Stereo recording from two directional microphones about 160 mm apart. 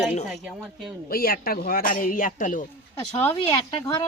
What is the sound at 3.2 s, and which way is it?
Speech, 15° left (ahead or behind).